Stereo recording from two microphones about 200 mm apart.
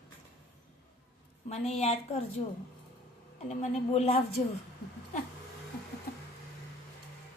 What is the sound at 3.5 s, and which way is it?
Speech, 35° left (ahead or behind).